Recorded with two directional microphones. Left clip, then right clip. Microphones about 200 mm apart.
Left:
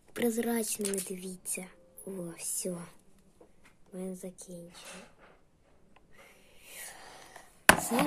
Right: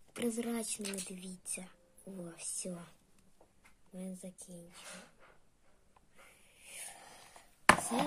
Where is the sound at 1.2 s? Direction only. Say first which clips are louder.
Left 6 dB; 50° left (ahead or behind).